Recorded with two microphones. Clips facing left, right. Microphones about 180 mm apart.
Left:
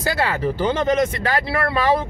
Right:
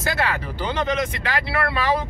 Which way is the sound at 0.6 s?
45° left (ahead or behind).